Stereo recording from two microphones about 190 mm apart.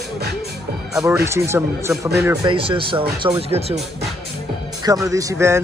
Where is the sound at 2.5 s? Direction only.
30° right (ahead or behind).